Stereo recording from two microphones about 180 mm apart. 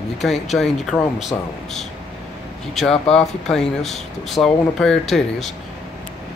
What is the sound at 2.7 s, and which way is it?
Speech, centre (ahead or behind).